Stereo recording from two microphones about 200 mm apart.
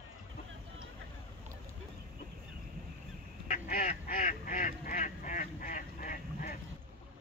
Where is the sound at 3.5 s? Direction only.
40° left (ahead or behind).